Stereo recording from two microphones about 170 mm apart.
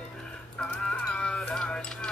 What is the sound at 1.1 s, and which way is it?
Music, 5° left (ahead or behind).